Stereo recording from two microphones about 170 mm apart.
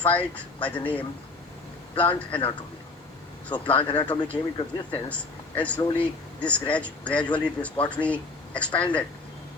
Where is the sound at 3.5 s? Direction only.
30° left (ahead or behind).